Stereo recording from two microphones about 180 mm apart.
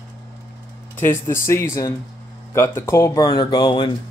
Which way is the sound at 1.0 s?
15° left (ahead or behind).